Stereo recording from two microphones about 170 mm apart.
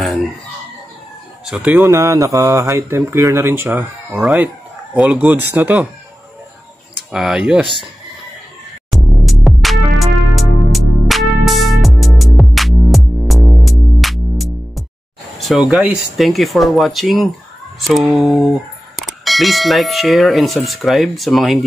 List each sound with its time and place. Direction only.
0.0 s chicken: centre (ahead or behind)
1.4 s speech: 5° right (ahead or behind)
1.8 s speech: 20° right (ahead or behind)
7.1 s speech: 5° right (ahead or behind)
8.9 s music: centre (ahead or behind)
15.3 s a sound: centre (ahead or behind)
15.7 s speech: 5° right (ahead or behind)